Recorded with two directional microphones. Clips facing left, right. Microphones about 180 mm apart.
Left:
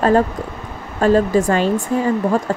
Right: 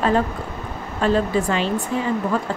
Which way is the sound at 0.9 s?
45° left (ahead or behind).